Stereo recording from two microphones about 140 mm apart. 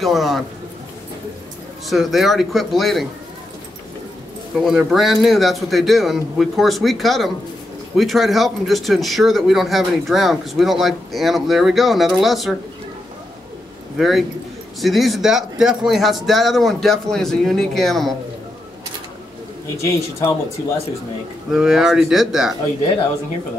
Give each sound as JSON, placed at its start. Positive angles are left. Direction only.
{"t": 0.0, "sound": "speech", "side_deg": 0}
{"t": 1.9, "sound": "speech", "side_deg": 0}
{"t": 4.6, "sound": "speech", "side_deg": -5}
{"t": 13.9, "sound": "speech", "side_deg": 0}
{"t": 19.8, "sound": "speech", "side_deg": 20}
{"t": 21.5, "sound": "speech", "side_deg": -5}